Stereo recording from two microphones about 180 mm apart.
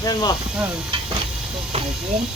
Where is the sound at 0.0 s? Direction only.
20° left (ahead or behind).